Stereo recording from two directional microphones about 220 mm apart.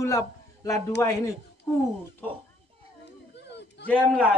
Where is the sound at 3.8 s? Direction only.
5° left (ahead or behind).